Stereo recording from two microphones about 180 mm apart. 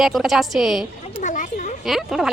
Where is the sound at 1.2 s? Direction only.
45° left (ahead or behind).